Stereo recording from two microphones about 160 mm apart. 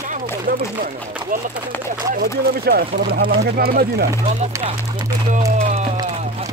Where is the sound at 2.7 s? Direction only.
80° right.